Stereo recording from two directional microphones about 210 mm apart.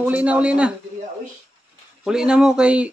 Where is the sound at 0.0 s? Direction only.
5° right (ahead or behind).